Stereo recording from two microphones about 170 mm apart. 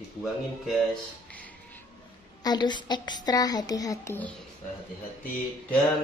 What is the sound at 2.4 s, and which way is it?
A child's voice, 25° left (ahead or behind).